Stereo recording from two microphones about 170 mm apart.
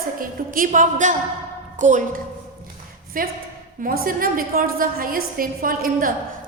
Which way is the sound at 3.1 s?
55° right (ahead or behind).